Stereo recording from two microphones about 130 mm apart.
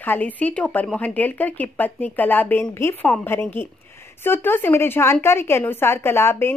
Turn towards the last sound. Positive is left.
turn(degrees=20)  # may be behind; listen again after turning